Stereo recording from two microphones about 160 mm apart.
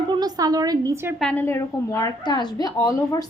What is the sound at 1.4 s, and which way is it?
A woman's voice, 20° left (ahead or behind).